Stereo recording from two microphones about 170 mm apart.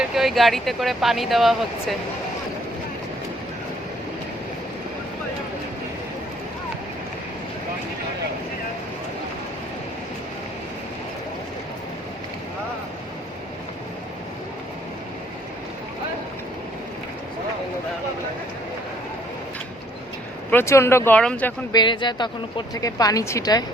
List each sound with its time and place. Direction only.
0.0 s speech: centre (ahead or behind)
20.5 s speech: 15° left (ahead or behind)
21.7 s a woman's voice: 25° left (ahead or behind)